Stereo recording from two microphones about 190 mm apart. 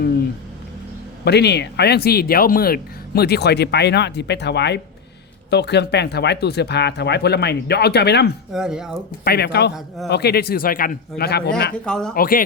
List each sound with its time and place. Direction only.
1.2 s speech: 60° left (ahead or behind)
8.5 s speech: 5° right (ahead or behind)
9.2 s speech: 55° left (ahead or behind)
11.9 s speech: 5° left (ahead or behind)
12.1 s speech: 50° left (ahead or behind)